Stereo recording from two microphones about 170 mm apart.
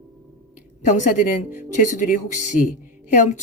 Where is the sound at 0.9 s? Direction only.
50° left (ahead or behind).